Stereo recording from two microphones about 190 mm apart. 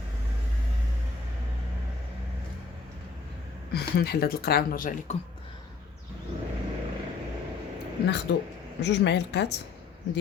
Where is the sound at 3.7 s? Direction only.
60° left (ahead or behind).